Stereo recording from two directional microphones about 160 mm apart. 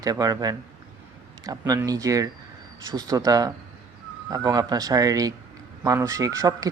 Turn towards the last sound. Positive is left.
turn(degrees=-20)  # may be behind; listen again after turning